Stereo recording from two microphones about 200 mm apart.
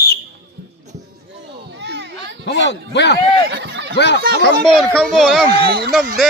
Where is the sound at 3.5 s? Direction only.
60° right (ahead or behind).